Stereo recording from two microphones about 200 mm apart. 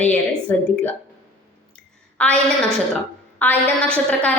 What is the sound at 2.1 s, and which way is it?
A woman's voice, 5° left (ahead or behind).